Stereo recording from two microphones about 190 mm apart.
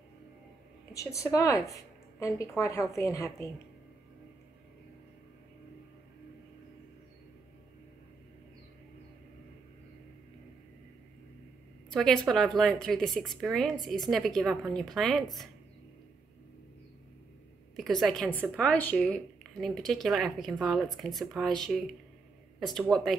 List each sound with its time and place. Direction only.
0.9 s speech: 15° left (ahead or behind)
11.9 s speech: centre (ahead or behind)
17.7 s speech: centre (ahead or behind)